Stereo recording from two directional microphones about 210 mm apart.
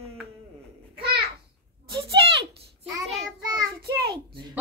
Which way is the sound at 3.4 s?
15° right (ahead or behind).